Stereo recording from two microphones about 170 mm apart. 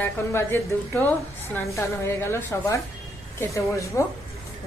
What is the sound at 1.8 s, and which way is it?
A woman's voice, 15° left (ahead or behind).